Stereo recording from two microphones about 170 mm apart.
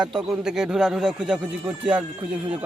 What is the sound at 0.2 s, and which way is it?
A man's voice, 5° right (ahead or behind).